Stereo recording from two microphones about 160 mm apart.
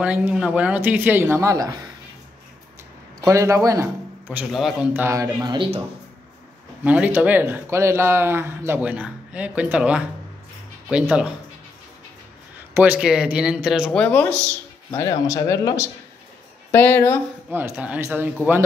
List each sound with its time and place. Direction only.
0.0 s speech: 10° right (ahead or behind)
3.2 s a man's voice: 20° right (ahead or behind); by 4.7 s centre (ahead or behind)
4.9 s a man's voice: 15° right (ahead or behind)
6.8 s speech: 10° right (ahead or behind)
12.7 s speech: 10° right (ahead or behind)
14.0 s speech: 5° left (ahead or behind)
15.0 s speech: 20° left (ahead or behind)
17.5 s speech: 15° right (ahead or behind)